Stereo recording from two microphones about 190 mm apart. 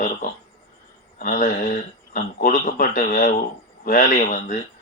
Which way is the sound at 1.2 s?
45° left (ahead or behind).